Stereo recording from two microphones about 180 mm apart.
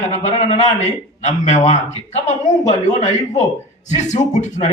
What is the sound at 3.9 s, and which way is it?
Speech, 40° left (ahead or behind).